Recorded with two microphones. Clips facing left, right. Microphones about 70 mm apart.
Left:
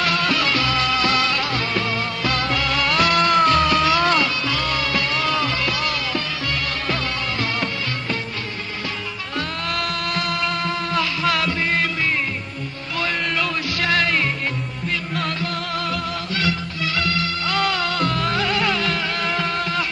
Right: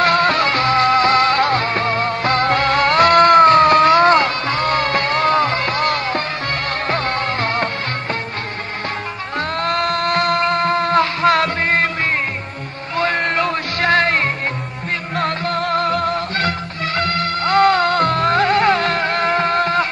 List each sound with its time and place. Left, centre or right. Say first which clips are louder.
0.0 s music: right 6 dB; right
9.4 s a sound: right 7 dB; right
12.9 s music: right 6 dB; right